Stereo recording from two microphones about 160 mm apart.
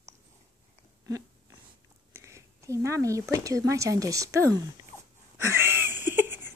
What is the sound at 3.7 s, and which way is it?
Speech, 20° right (ahead or behind).